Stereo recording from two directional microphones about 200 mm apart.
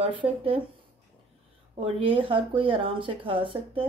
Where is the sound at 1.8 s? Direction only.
25° right (ahead or behind).